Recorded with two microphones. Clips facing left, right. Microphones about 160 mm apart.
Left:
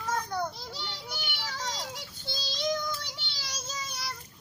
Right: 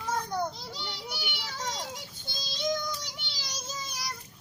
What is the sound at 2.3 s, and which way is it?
Child singing, 20° right (ahead or behind).